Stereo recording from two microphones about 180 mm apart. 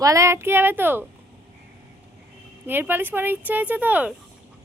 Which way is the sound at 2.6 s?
10° right (ahead or behind).